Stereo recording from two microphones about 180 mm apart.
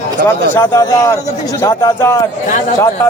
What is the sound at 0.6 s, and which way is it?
Speech, 20° left (ahead or behind).